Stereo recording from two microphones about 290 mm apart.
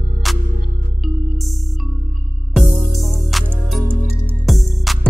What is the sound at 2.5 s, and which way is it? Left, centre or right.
Music, centre.